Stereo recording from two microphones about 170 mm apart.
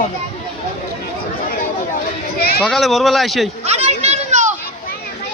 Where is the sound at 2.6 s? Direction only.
Centre (ahead or behind).